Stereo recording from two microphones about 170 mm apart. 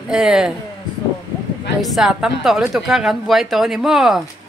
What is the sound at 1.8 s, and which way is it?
A woman's voice, centre (ahead or behind).